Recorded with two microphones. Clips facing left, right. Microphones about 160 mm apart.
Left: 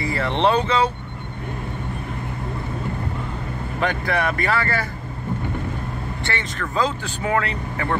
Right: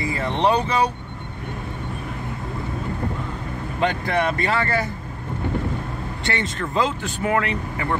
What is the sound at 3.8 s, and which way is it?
Speech, 20° right (ahead or behind).